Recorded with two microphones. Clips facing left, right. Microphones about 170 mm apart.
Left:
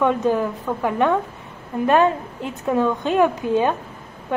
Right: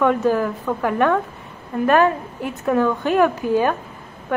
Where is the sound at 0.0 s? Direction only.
20° left (ahead or behind).